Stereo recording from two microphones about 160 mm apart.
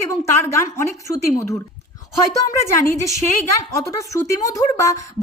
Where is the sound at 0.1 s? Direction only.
20° left (ahead or behind).